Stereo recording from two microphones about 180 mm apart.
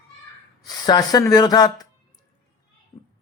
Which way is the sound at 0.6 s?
20° left (ahead or behind).